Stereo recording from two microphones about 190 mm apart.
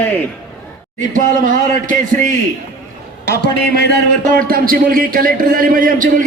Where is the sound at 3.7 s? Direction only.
60° left (ahead or behind).